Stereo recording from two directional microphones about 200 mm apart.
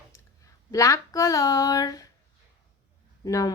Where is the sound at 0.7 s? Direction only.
15° left (ahead or behind).